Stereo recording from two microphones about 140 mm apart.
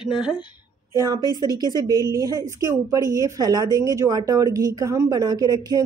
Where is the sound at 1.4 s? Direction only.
30° right (ahead or behind).